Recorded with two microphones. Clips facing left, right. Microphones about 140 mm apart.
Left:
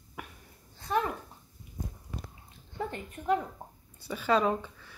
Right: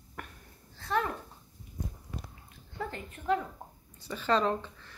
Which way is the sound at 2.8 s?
20° left (ahead or behind).